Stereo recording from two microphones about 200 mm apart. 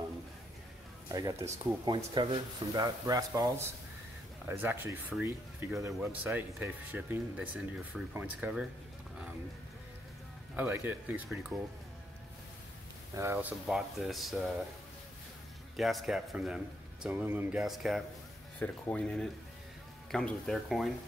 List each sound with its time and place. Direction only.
1.0 s a sound: 15° right (ahead or behind)
1.4 s speech: 15° right (ahead or behind)
2.0 s speech: 25° right (ahead or behind); by 8.6 s 5° right (ahead or behind)
10.5 s speech: 10° right (ahead or behind)
13.1 s speech: 15° right (ahead or behind)
13.7 s a man's voice: centre (ahead or behind)
15.7 s a man's voice: centre (ahead or behind)